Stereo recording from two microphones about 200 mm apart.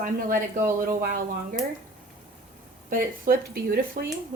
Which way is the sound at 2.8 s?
45° right (ahead or behind).